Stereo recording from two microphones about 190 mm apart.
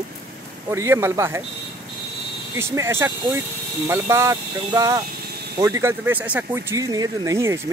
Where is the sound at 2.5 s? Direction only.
15° right (ahead or behind).